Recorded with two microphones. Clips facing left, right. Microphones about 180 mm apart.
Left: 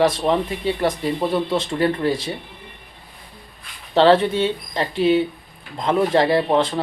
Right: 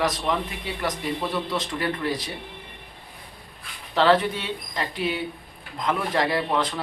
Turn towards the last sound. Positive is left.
turn(degrees=25)  # may be behind; listen again after turning